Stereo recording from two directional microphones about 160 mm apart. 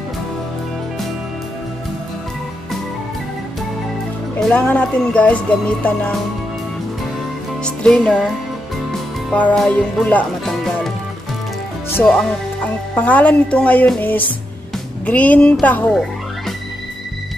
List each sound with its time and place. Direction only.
4.4 s speech: 5° left (ahead or behind)
7.6 s music: 5° left (ahead or behind)
9.3 s speech: 10° left (ahead or behind)
12.0 s speech: 5° left (ahead or behind)